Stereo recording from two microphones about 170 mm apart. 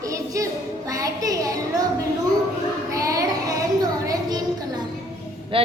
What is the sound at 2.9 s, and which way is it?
Child singing, 20° right (ahead or behind).